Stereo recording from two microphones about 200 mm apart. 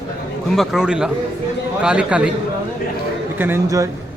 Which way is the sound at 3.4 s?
10° right (ahead or behind).